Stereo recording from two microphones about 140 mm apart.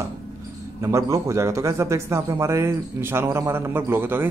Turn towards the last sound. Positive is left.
turn(degrees=-15)  # may be behind; listen again after turning